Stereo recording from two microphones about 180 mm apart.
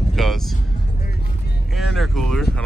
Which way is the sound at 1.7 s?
Centre (ahead or behind).